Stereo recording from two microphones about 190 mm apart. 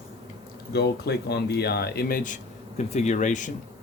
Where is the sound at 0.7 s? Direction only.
60° left (ahead or behind); by 3.5 s 40° left (ahead or behind).